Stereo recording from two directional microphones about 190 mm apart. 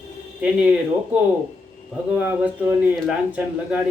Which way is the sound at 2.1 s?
5° right (ahead or behind).